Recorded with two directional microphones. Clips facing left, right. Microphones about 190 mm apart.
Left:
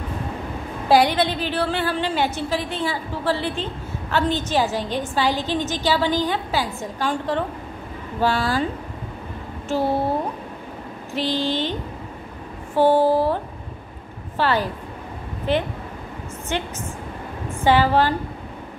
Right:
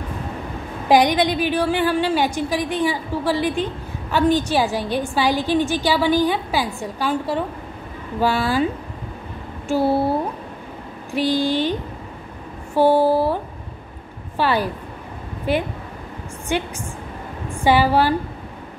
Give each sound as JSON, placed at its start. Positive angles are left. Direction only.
{"t": 0.8, "sound": "a woman's voice", "side_deg": -15}
{"t": 9.7, "sound": "speech", "side_deg": -10}
{"t": 11.1, "sound": "a woman's voice", "side_deg": -10}
{"t": 12.7, "sound": "a woman's voice", "side_deg": -10}